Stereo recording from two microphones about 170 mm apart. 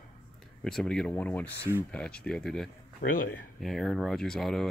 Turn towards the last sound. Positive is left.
turn(degrees=0)  # may be behind; listen again after turning